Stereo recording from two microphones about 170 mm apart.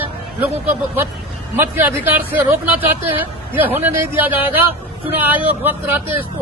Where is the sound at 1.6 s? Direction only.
10° right (ahead or behind).